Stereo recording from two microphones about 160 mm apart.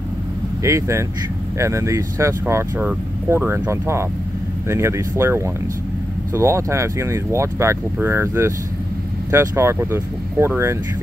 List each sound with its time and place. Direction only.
0.7 s speech: 20° right (ahead or behind)